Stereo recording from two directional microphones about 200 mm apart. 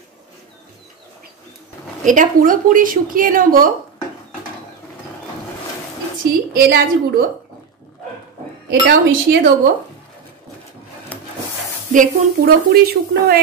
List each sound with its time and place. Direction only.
2.0 s speech: 40° right (ahead or behind)
6.5 s speech: 50° right (ahead or behind)
8.6 s a woman's voice: 55° right (ahead or behind)
11.9 s speech: 45° right (ahead or behind)